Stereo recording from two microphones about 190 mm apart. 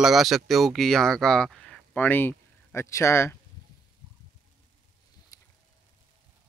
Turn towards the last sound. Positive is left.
turn(degrees=20)  # may be behind; listen again after turning